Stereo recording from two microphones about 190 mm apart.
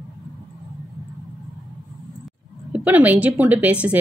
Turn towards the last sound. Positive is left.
turn(degrees=-10)  # may be behind; listen again after turning